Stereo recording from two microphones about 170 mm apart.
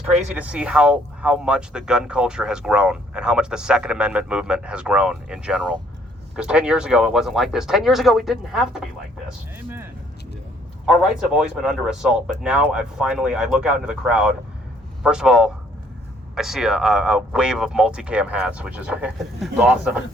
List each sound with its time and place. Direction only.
0.0 s speech: 10° right (ahead or behind)
9.6 s a sound: 10° right (ahead or behind)
10.8 s speech: 5° right (ahead or behind)